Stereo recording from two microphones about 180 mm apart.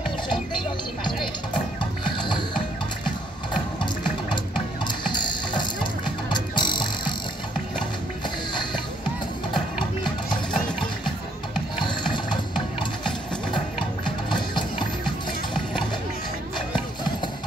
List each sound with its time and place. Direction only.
2.0 s mechanisms: 25° left (ahead or behind)
4.8 s music: 25° left (ahead or behind)
11.8 s music: 25° left (ahead or behind)
14.0 s music: 25° left (ahead or behind)